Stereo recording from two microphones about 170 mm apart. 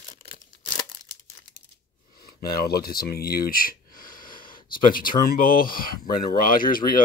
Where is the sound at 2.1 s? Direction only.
65° left (ahead or behind).